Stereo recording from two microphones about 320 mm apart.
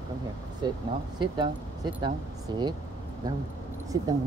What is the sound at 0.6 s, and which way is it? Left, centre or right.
Speech, centre.